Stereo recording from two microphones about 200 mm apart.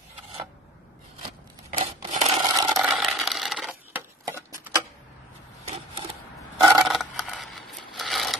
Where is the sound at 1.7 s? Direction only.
35° right (ahead or behind).